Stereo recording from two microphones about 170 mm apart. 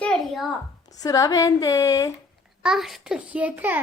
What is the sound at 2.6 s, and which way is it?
A child's voice, centre (ahead or behind).